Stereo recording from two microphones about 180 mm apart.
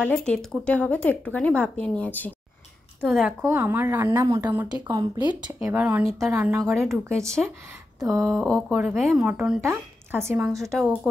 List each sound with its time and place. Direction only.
0.0 s speech: 5° left (ahead or behind)
3.4 s speech: 10° right (ahead or behind)
6.7 s speech: centre (ahead or behind)
10.7 s speech: 5° left (ahead or behind)